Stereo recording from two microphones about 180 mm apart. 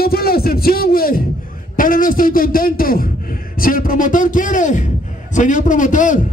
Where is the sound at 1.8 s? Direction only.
50° left (ahead or behind).